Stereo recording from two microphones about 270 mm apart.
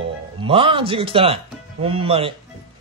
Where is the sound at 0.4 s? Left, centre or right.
Centre.